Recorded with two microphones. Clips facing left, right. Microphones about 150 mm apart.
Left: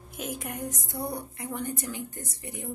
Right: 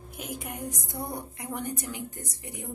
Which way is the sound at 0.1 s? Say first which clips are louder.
Left 2 dB; 15° right (ahead or behind).